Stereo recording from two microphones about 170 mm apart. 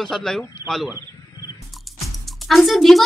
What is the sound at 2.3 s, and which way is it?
Speech, centre (ahead or behind).